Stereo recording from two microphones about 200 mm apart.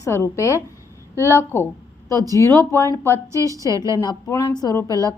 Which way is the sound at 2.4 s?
10° left (ahead or behind).